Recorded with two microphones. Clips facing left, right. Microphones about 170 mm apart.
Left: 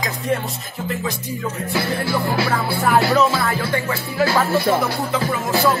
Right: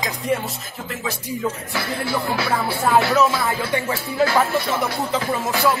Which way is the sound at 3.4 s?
20° right (ahead or behind).